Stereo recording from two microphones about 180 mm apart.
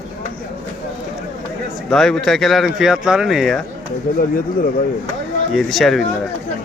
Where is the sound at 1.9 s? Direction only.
Centre (ahead or behind).